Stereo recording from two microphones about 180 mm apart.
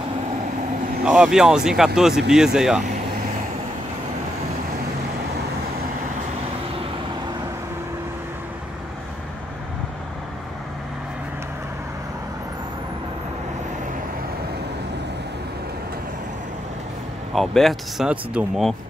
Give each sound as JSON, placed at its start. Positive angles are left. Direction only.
{"t": 1.0, "sound": "speech", "side_deg": -5}
{"t": 17.3, "sound": "speech", "side_deg": 0}